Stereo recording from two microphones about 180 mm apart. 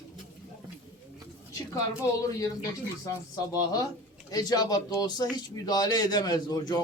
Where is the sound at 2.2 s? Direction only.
20° left (ahead or behind).